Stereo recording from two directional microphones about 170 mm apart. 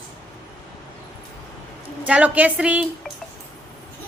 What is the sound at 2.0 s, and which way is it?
Speech, 5° right (ahead or behind).